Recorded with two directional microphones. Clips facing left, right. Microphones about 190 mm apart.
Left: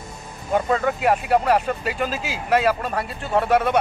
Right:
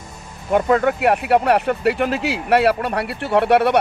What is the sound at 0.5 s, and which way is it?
Speech, 65° right (ahead or behind).